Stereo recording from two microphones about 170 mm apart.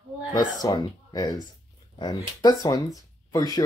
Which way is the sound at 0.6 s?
20° left (ahead or behind).